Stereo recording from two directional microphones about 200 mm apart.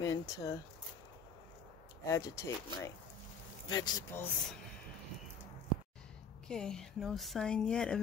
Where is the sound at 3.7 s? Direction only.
20° left (ahead or behind).